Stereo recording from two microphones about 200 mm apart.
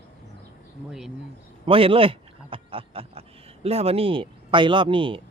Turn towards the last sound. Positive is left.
turn(degrees=-25)  # may be behind; listen again after turning